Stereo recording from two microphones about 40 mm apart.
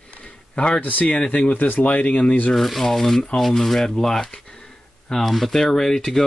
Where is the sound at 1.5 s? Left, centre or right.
Left.